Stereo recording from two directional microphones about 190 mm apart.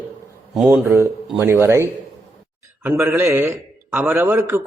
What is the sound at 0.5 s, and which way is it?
Speech, 5° right (ahead or behind).